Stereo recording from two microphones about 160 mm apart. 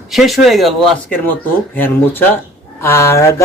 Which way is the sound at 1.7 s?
10° left (ahead or behind).